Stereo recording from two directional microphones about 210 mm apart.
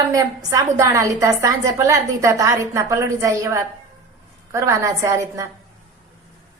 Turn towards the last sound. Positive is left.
turn(degrees=-15)  # may be behind; listen again after turning